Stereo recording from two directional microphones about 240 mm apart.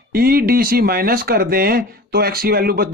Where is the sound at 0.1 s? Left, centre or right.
Right.